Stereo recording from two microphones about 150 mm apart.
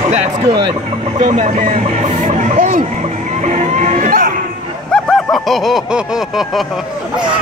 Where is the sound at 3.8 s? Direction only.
55° right (ahead or behind).